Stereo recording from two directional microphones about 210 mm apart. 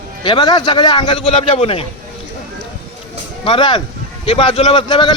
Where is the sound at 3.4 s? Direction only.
25° left (ahead or behind).